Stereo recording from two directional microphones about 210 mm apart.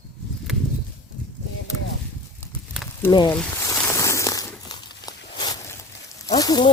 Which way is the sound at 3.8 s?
10° left (ahead or behind).